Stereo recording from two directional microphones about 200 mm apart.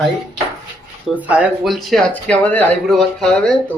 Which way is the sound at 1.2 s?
5° right (ahead or behind).